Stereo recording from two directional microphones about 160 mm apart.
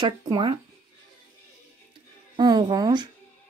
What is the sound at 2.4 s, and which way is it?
Speech, 25° right (ahead or behind).